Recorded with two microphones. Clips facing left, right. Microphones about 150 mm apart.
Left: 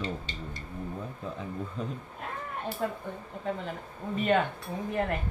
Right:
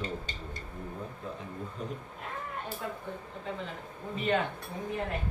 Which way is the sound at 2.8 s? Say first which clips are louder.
Left 8 dB; 50° left (ahead or behind).